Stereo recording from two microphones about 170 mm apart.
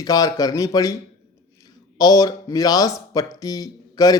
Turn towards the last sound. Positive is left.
turn(degrees=20)  # may be behind; listen again after turning